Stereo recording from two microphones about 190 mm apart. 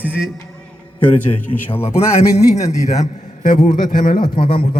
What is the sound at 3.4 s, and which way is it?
Speech, 40° left (ahead or behind).